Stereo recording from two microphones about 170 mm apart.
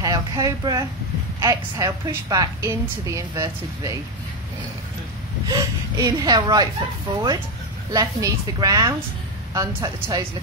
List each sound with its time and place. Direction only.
0.0 s a woman's voice: 20° right (ahead or behind)
5.5 s a woman's voice: 25° right (ahead or behind)
7.9 s a woman's voice: 20° right (ahead or behind)